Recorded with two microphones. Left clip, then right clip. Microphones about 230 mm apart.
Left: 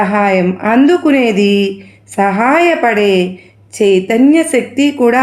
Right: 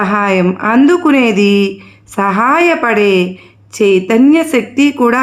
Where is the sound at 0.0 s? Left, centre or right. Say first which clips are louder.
Left 1 dB; right.